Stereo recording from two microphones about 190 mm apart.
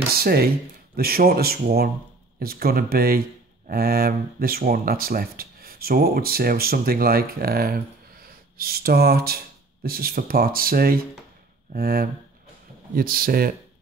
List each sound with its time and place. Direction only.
0.1 s speech: 55° right (ahead or behind)